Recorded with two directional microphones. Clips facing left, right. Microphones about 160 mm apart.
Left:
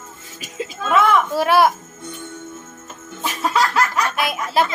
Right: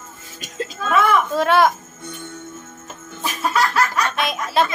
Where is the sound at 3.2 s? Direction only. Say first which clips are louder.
Left 1 dB; 20° left (ahead or behind).